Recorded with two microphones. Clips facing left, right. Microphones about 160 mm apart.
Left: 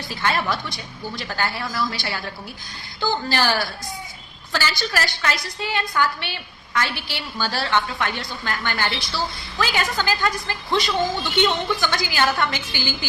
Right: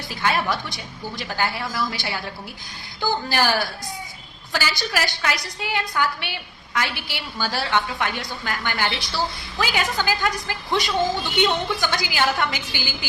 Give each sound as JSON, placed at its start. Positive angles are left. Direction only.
{"t": 0.2, "sound": "a woman's voice", "side_deg": -10}
{"t": 3.2, "sound": "a woman's voice", "side_deg": -15}